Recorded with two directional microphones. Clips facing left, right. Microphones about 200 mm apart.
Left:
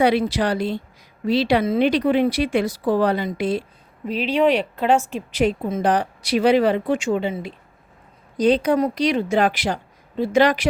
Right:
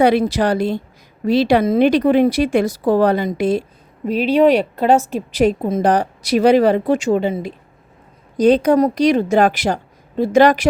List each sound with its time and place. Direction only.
0.0 s a woman's voice: 45° right (ahead or behind)